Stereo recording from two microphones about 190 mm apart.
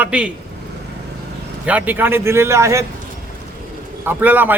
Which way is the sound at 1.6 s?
10° right (ahead or behind).